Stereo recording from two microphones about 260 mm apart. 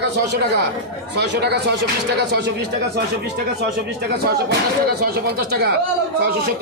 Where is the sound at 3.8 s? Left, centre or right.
Right.